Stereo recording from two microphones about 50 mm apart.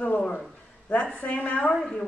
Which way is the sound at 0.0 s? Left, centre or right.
Left.